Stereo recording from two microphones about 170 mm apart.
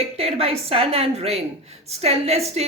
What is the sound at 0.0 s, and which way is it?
A woman's voice, 35° right (ahead or behind).